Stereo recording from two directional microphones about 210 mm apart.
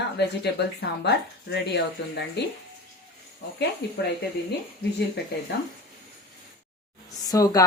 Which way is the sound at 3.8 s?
50° left (ahead or behind).